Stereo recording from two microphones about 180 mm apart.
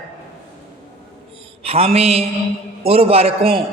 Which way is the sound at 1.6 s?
35° right (ahead or behind).